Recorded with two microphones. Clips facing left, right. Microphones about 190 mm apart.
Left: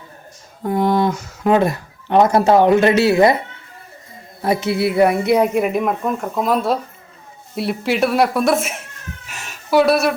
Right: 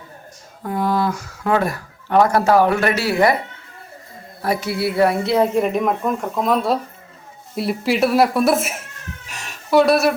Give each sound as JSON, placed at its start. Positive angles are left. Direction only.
{"t": 0.6, "sound": "speech", "side_deg": 25}
{"t": 4.4, "sound": "a woman's voice", "side_deg": 20}
{"t": 9.2, "sound": "a sound", "side_deg": 5}